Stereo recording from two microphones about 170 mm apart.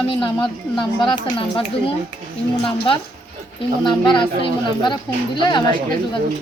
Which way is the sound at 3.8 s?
30° left (ahead or behind).